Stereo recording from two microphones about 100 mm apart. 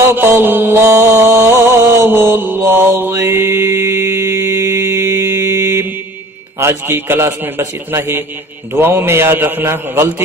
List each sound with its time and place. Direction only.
0.0 s music: 25° right (ahead or behind)
6.6 s a man's voice: 25° right (ahead or behind)